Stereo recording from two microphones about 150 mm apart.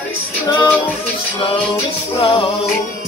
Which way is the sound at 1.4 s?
35° left (ahead or behind).